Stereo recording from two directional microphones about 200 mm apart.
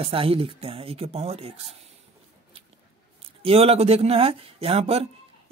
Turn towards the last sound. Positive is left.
turn(degrees=-30)  # may be behind; listen again after turning